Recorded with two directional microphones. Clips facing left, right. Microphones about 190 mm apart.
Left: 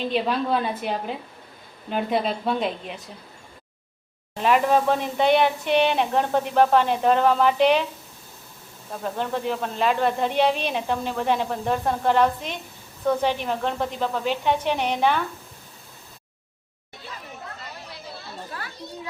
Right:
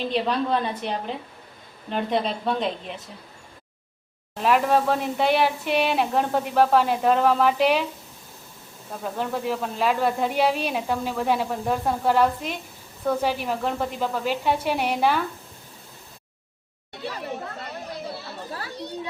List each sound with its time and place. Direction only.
0.0 s speech: 5° left (ahead or behind)
4.4 s speech: centre (ahead or behind)
8.9 s speech: centre (ahead or behind)
17.0 s a sound: 75° right (ahead or behind)